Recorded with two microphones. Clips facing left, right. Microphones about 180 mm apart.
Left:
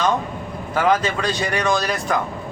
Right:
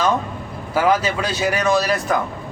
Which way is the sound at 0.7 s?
5° right (ahead or behind).